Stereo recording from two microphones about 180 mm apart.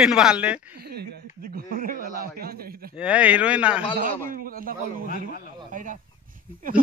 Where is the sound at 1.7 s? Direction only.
50° right (ahead or behind).